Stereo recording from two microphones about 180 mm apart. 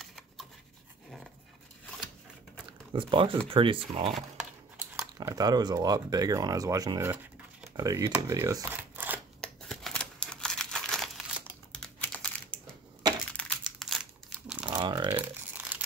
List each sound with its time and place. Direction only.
0.0 s rub: centre (ahead or behind)
2.9 s speech: 30° right (ahead or behind)
4.7 s speech: 15° right (ahead or behind)
9.4 s crumpling: 5° left (ahead or behind)
14.8 s a sound: 25° right (ahead or behind)
15.1 s crumpling: 10° right (ahead or behind)